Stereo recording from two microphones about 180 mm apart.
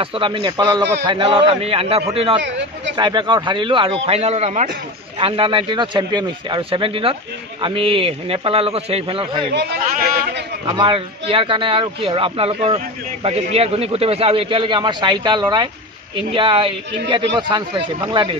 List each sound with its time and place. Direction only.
0.0 s a man's voice: 30° right (ahead or behind)
2.4 s speech: 80° right
3.0 s a man's voice: 25° right (ahead or behind)
10.7 s speech: 25° right (ahead or behind)